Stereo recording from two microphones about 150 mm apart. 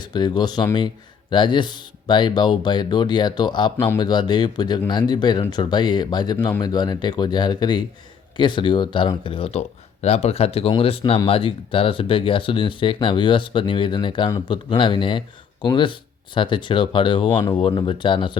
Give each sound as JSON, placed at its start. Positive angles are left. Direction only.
{"t": 0.0, "sound": "speech", "side_deg": 30}